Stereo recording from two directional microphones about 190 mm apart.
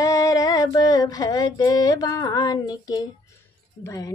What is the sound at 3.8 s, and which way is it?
Speech, 20° left (ahead or behind).